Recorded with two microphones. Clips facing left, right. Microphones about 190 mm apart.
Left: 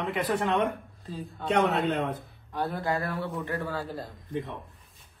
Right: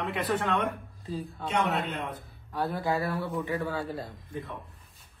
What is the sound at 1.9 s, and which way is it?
Speech, 65° left (ahead or behind).